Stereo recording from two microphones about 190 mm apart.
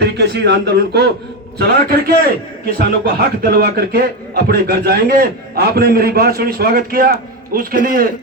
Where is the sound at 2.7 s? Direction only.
55° right (ahead or behind).